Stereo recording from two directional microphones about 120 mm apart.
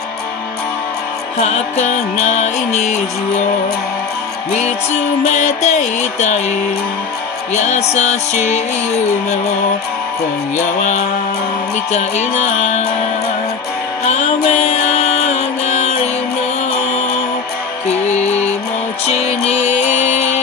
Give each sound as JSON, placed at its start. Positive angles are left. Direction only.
{"t": 1.4, "sound": "music", "side_deg": 70}
{"t": 4.5, "sound": "music", "side_deg": 65}
{"t": 7.5, "sound": "music", "side_deg": 75}
{"t": 10.8, "sound": "music", "side_deg": 80}
{"t": 14.0, "sound": "music", "side_deg": 70}
{"t": 17.8, "sound": "music", "side_deg": 70}